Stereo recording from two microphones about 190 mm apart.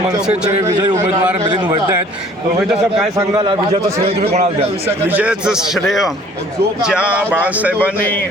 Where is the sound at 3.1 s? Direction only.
25° right (ahead or behind).